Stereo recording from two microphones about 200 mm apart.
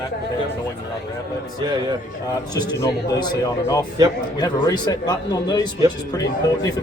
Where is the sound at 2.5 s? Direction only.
20° left (ahead or behind).